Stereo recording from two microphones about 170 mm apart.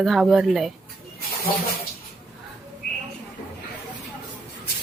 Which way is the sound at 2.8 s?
60° left (ahead or behind).